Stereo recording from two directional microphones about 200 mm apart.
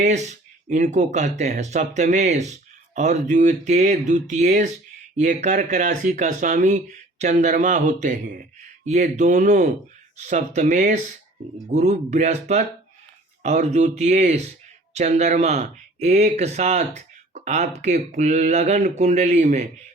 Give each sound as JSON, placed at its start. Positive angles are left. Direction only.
{"t": 0.0, "sound": "speech", "side_deg": -35}